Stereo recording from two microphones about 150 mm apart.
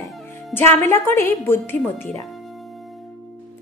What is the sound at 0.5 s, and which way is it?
A woman's voice, 15° left (ahead or behind).